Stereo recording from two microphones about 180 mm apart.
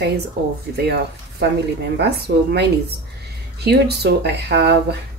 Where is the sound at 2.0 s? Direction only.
65° right (ahead or behind).